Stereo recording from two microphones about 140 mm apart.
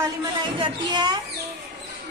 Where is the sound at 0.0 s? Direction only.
25° right (ahead or behind).